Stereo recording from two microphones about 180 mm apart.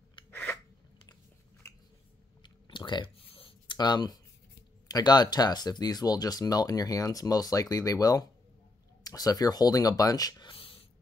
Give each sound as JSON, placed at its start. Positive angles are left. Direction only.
{"t": 0.3, "sound": "scissors", "side_deg": 10}
{"t": 1.6, "sound": "a sound", "side_deg": 15}
{"t": 4.8, "sound": "speech", "side_deg": 20}